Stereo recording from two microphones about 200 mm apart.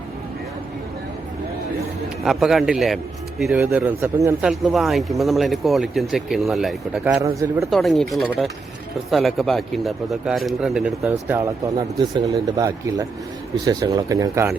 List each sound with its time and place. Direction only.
2.2 s a man's voice: centre (ahead or behind)